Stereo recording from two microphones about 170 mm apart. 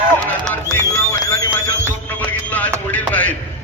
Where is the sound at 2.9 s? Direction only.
10° left (ahead or behind).